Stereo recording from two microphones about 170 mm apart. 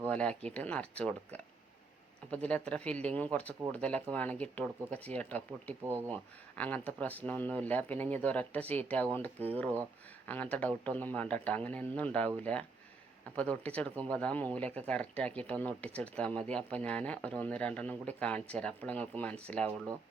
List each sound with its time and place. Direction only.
0.0 s speech: 5° left (ahead or behind)
5.8 s speech: 15° right (ahead or behind)
6.6 s speech: 10° left (ahead or behind)